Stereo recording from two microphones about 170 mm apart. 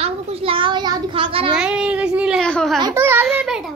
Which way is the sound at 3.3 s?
Centre (ahead or behind).